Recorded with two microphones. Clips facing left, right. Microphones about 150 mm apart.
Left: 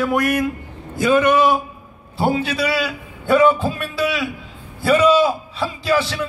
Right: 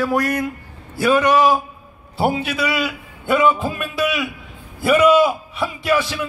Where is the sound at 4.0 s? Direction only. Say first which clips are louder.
Even; 30° left (ahead or behind).